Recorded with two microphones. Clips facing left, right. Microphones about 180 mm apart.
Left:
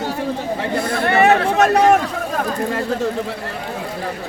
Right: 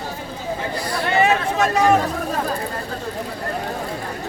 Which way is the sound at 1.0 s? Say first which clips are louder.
Left 4 dB; 60° left (ahead or behind).